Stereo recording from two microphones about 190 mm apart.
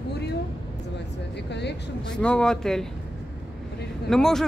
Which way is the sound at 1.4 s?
65° left (ahead or behind).